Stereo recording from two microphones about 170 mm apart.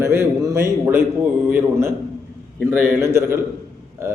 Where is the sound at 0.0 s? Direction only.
15° right (ahead or behind).